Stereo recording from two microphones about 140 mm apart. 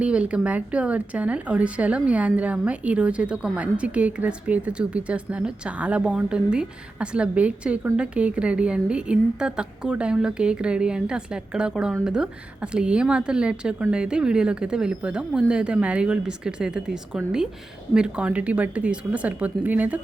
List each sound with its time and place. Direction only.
0.0 s a woman's voice: 10° right (ahead or behind)